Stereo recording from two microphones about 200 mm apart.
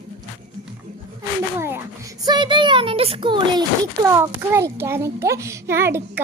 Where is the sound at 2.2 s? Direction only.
20° right (ahead or behind).